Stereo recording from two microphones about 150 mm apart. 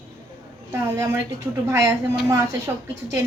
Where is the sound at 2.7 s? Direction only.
15° right (ahead or behind).